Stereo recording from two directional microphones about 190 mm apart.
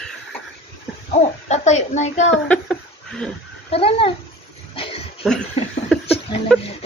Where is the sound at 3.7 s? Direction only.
30° left (ahead or behind).